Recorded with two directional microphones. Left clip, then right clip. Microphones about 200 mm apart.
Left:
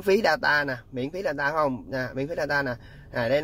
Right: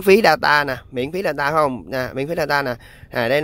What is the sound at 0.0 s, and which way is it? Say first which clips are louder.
Speech: right 8 dB; 45° right (ahead or behind).